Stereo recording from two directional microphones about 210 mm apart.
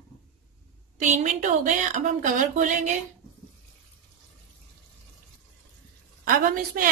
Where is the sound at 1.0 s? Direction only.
35° right (ahead or behind).